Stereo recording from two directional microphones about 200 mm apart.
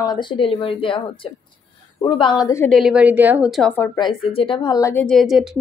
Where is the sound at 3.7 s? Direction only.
15° left (ahead or behind).